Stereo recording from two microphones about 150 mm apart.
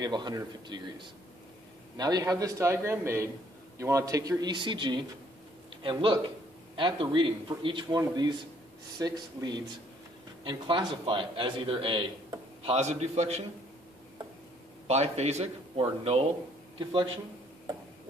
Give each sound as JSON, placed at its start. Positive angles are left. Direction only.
{"t": 0.0, "sound": "a man's voice", "side_deg": -30}
{"t": 14.9, "sound": "a man's voice", "side_deg": -45}